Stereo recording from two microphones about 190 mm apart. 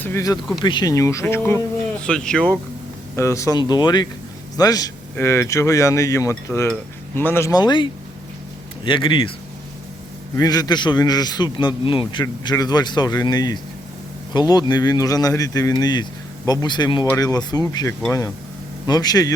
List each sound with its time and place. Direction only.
0.0 s a man's voice: 15° left (ahead or behind)
10.3 s a man's voice: 20° left (ahead or behind)